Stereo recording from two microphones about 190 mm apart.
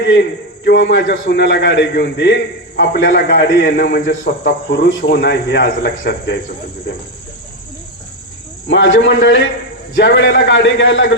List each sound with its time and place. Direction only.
0.1 s a man's voice: 65° left (ahead or behind)
8.6 s a man's voice: 85° left